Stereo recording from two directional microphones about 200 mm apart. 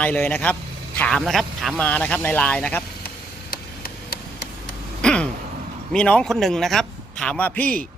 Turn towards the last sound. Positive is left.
turn(degrees=5)  # may be behind; listen again after turning